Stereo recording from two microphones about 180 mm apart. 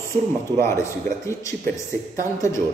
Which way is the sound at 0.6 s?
15° left (ahead or behind).